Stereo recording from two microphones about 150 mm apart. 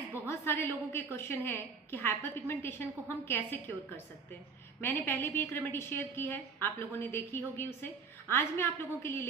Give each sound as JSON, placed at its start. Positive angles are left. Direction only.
{"t": 0.3, "sound": "a woman's voice", "side_deg": 15}
{"t": 4.7, "sound": "a woman's voice", "side_deg": 15}